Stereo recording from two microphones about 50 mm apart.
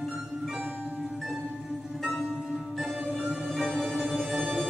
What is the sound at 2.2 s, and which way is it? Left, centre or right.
Music, centre.